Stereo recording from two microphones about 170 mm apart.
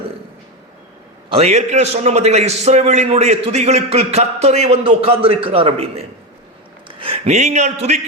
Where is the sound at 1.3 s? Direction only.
40° right (ahead or behind).